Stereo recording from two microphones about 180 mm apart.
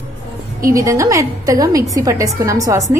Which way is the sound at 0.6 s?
15° right (ahead or behind).